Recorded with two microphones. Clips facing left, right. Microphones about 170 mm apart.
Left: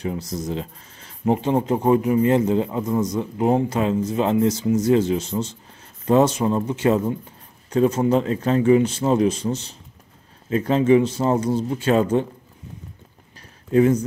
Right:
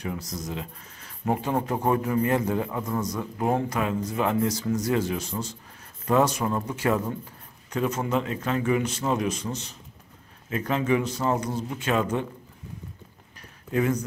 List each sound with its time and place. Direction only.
0.0 s a man's voice: 25° left (ahead or behind)
13.7 s speech: 30° left (ahead or behind)